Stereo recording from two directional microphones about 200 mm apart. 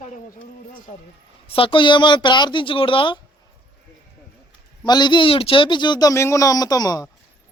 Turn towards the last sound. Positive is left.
turn(degrees=20)  # may be behind; listen again after turning